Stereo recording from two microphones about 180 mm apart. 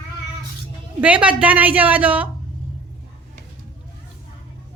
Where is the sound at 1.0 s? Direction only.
5° right (ahead or behind).